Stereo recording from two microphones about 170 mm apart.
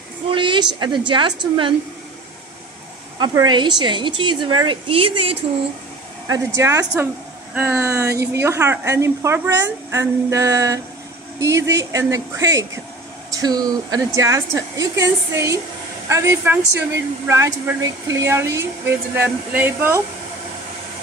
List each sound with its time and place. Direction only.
0.3 s a woman's voice: 30° right (ahead or behind)
3.2 s a woman's voice: 25° right (ahead or behind)
6.2 s a woman's voice: 20° right (ahead or behind)